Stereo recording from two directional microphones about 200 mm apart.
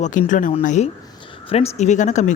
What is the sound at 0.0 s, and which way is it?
Speech, 40° left (ahead or behind).